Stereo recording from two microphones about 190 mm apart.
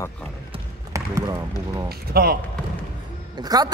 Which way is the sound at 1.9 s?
55° right (ahead or behind).